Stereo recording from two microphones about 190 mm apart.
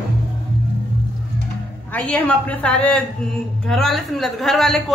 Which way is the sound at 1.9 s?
10° left (ahead or behind).